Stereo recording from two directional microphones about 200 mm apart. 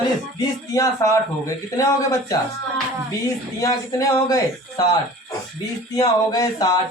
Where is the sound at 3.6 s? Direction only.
20° left (ahead or behind).